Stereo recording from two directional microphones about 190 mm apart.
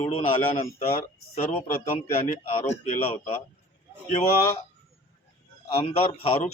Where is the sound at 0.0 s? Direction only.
30° left (ahead or behind).